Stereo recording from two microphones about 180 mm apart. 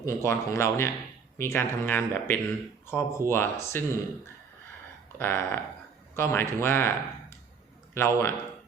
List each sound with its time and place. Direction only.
0.0 s speech: 15° left (ahead or behind)
5.2 s speech: 10° left (ahead or behind)